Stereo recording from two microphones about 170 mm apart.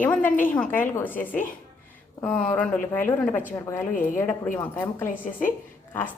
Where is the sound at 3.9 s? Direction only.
50° left (ahead or behind).